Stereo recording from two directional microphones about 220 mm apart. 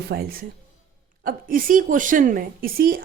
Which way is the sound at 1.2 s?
40° right (ahead or behind).